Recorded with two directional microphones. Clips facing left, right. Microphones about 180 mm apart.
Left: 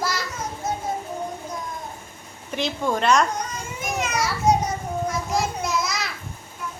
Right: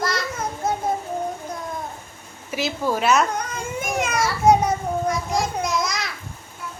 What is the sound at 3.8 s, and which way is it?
Speech, 55° right (ahead or behind).